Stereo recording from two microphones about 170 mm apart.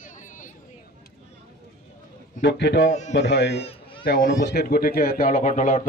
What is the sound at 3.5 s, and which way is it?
Baby cry, 35° left (ahead or behind).